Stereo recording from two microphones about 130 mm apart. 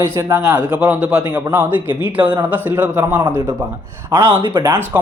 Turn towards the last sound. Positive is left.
turn(degrees=-15)  # may be behind; listen again after turning